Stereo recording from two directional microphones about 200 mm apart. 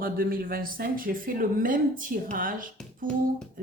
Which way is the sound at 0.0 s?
50° right (ahead or behind).